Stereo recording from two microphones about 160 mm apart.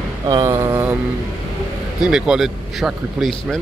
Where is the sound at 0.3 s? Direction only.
20° right (ahead or behind).